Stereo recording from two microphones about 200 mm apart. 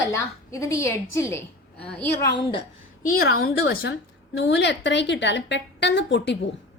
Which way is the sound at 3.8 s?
65° left (ahead or behind).